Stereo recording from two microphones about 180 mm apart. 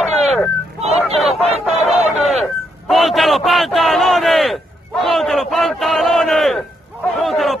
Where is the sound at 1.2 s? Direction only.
Centre (ahead or behind).